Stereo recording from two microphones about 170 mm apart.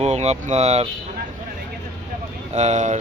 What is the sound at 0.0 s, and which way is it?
Speech, 40° right (ahead or behind).